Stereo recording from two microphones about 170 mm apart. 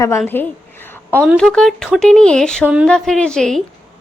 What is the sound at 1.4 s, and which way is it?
Speech, 5° left (ahead or behind).